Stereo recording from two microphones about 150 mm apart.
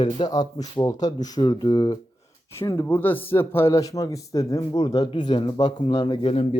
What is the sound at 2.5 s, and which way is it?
A man's voice, 15° left (ahead or behind).